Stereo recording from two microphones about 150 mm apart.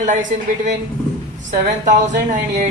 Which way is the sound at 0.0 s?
55° right (ahead or behind).